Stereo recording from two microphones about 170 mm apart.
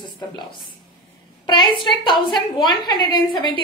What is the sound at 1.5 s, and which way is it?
A woman's voice, 25° left (ahead or behind).